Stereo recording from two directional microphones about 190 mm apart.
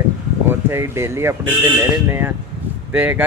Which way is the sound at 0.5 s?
15° right (ahead or behind).